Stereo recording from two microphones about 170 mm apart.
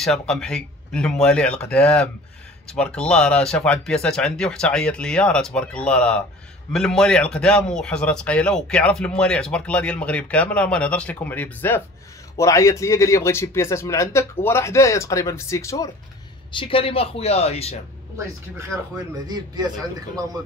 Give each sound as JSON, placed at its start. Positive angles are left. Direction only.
{"t": 0.0, "sound": "a man's voice", "side_deg": 5}
{"t": 16.5, "sound": "a man's voice", "side_deg": 30}
{"t": 18.1, "sound": "speech", "side_deg": -15}